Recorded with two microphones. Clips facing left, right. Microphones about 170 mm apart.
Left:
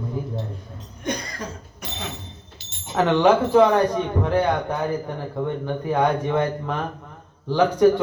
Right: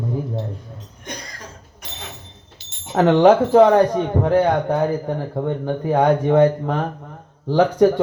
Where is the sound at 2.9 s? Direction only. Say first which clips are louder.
Right 4 dB; 45° right (ahead or behind).